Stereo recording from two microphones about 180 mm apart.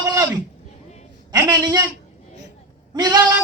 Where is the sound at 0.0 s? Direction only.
20° right (ahead or behind).